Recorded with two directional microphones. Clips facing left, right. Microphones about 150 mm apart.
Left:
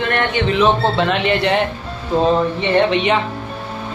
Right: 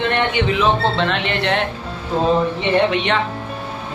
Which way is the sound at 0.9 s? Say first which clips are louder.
Left 3 dB; 5° left (ahead or behind).